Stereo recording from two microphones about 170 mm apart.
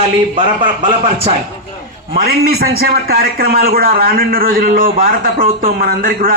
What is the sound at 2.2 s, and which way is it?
A man's voice, 65° right (ahead or behind).